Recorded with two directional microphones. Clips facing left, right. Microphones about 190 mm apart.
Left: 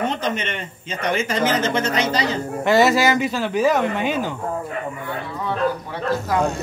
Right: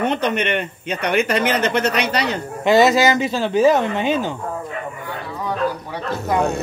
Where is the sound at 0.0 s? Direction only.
65° right (ahead or behind).